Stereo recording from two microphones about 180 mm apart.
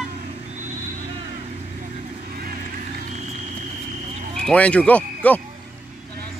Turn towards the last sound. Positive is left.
turn(degrees=10)  # may be behind; listen again after turning